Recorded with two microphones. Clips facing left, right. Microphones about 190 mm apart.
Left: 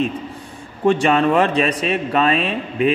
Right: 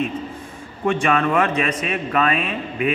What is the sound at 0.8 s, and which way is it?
A man's voice, 35° left (ahead or behind).